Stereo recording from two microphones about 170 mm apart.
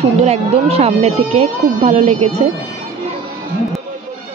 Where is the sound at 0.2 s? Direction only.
35° right (ahead or behind).